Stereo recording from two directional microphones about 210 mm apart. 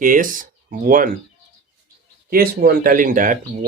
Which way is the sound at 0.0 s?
40° right (ahead or behind).